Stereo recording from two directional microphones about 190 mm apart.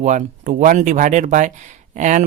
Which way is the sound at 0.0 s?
40° right (ahead or behind).